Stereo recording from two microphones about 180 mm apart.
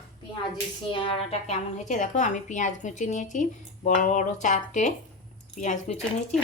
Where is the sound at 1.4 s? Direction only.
40° left (ahead or behind).